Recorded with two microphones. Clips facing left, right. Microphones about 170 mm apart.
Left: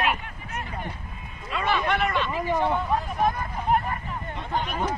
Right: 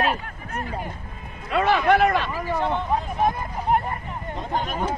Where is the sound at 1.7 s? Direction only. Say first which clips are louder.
Right 6 dB; 45° right (ahead or behind).